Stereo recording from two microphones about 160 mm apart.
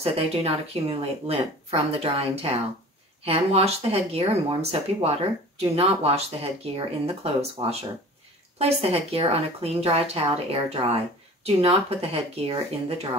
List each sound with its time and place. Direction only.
0.0 s speech: 40° right (ahead or behind)